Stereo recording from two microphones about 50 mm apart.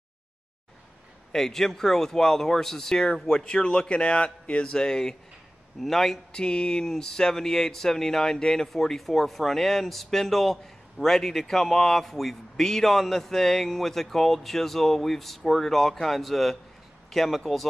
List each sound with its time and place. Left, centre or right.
1.3 s speech: centre
6.3 s speech: centre